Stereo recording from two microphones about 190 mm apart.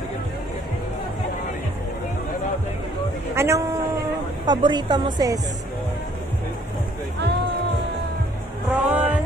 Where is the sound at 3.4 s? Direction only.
15° right (ahead or behind).